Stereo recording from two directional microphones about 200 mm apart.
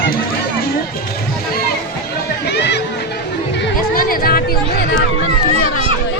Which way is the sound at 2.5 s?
55° left (ahead or behind).